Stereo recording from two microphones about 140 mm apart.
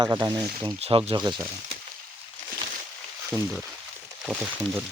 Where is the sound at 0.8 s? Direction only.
45° right (ahead or behind).